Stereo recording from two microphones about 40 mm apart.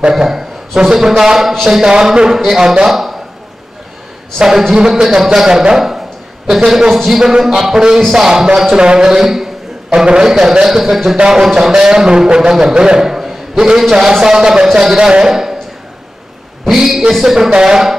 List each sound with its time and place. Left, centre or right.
0.1 s a man's voice: centre
2.9 s speech: centre
4.4 s a man's voice: centre
8.8 s a sound: right
9.1 s a man's voice: centre
9.8 s a man's voice: right
11.1 s a sound: centre
11.6 s a man's voice: centre
16.6 s a sound: centre
17.1 s a man's voice: centre